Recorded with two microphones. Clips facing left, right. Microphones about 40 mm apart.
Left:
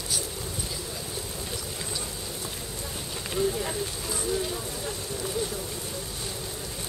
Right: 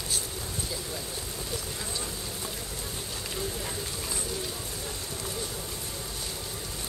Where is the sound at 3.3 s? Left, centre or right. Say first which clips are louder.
Left 9 dB; centre.